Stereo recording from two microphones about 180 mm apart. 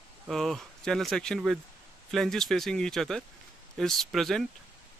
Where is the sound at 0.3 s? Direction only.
Centre (ahead or behind).